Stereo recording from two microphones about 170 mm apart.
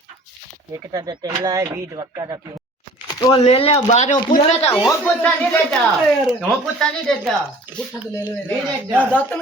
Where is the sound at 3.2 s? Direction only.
25° left (ahead or behind).